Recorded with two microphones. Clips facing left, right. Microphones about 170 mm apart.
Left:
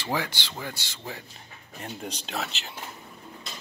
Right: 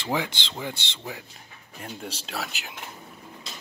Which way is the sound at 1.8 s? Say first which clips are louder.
Even; 5° right (ahead or behind).